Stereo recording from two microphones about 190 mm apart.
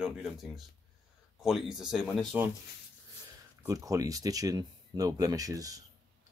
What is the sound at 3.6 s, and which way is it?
Speech, 15° right (ahead or behind).